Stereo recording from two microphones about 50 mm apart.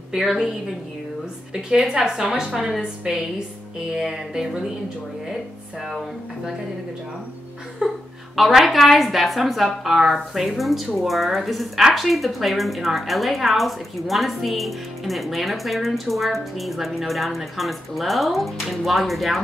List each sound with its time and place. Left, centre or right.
0.2 s a woman's voice: centre
1.5 s music: centre
3.9 s music: centre
5.3 s speech: centre
7.8 s chuckle: centre
8.4 s a woman's voice: centre